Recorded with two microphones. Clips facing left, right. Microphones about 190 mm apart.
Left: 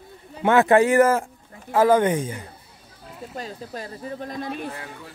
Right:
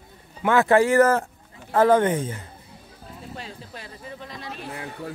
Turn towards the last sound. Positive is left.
turn(degrees=50)  # may be behind; listen again after turning